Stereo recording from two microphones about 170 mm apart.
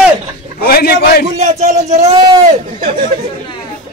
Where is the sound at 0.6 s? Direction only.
65° left (ahead or behind).